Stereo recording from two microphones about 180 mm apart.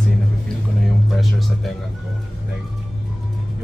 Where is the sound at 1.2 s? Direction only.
Centre (ahead or behind).